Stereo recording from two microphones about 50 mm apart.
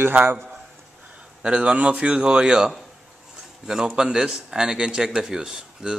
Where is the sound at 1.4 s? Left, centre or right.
Right.